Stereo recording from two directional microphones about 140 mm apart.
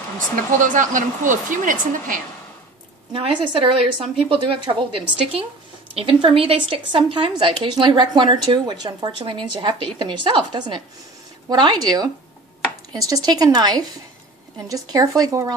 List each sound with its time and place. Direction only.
0.6 s speech: 65° right (ahead or behind)
3.1 s a woman's voice: 40° right (ahead or behind); by 15.5 s 25° right (ahead or behind)